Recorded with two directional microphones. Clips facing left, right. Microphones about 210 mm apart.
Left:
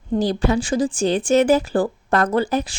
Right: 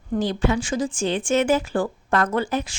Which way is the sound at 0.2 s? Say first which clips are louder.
Left 2 dB; 35° left (ahead or behind).